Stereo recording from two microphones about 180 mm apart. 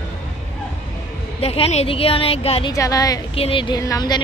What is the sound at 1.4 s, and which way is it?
A woman's voice, 35° left (ahead or behind).